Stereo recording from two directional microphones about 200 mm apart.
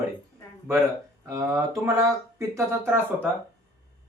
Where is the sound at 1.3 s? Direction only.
15° right (ahead or behind).